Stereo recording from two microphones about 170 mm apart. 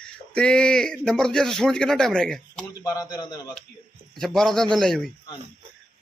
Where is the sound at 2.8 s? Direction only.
20° left (ahead or behind).